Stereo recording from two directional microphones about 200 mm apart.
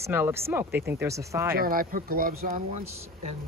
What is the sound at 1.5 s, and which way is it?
Speech, 45° right (ahead or behind).